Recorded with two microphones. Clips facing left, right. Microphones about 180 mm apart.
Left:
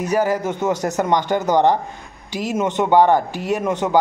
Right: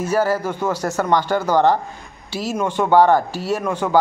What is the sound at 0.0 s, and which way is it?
A man's voice, 15° left (ahead or behind).